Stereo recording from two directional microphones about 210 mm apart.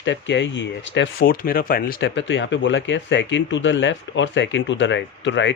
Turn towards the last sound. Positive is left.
turn(degrees=60)  # may be behind; listen again after turning